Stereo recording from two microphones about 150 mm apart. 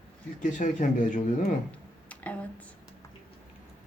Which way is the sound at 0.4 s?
60° left (ahead or behind).